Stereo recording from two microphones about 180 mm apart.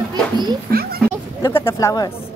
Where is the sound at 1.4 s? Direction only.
15° left (ahead or behind).